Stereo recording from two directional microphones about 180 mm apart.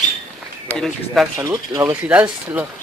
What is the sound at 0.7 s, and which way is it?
Speech, centre (ahead or behind).